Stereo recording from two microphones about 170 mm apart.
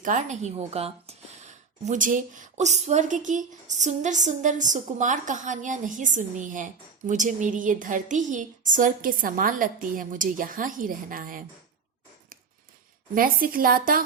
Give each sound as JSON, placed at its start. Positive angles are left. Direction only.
{"t": 0.0, "sound": "a woman's voice", "side_deg": -45}
{"t": 1.8, "sound": "speech", "side_deg": -50}
{"t": 13.1, "sound": "a woman's voice", "side_deg": -55}